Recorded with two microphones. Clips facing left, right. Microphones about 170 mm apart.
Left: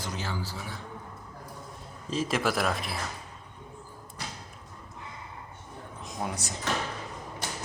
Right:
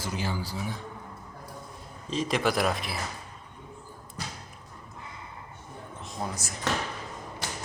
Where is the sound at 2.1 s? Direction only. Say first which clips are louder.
Right 1 dB; 5° left (ahead or behind).